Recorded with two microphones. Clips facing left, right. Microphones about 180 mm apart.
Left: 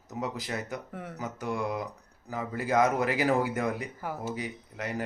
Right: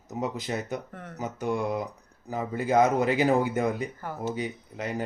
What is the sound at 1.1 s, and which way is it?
Speech, 20° right (ahead or behind).